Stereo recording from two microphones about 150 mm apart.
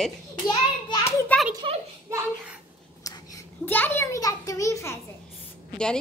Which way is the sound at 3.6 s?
10° left (ahead or behind).